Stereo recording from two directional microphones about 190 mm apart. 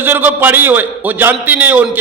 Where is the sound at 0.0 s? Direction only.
10° right (ahead or behind).